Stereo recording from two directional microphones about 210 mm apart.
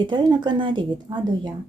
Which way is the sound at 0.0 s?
20° right (ahead or behind).